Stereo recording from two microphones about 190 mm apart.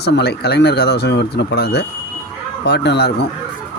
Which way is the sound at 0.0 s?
60° left (ahead or behind).